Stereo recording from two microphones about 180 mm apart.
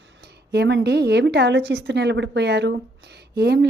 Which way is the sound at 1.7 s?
80° right.